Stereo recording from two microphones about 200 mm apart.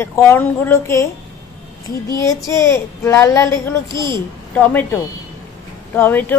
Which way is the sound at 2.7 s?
15° left (ahead or behind).